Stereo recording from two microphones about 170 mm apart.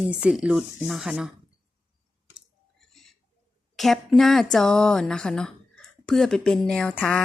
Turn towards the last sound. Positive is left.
turn(degrees=5)  # may be behind; listen again after turning